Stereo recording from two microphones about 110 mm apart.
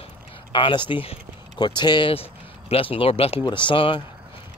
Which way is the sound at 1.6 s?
40° left (ahead or behind).